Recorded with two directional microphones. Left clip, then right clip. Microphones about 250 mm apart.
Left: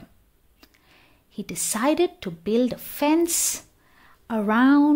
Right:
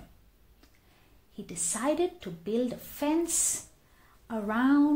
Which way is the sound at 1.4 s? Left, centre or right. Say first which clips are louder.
Left 8 dB; left.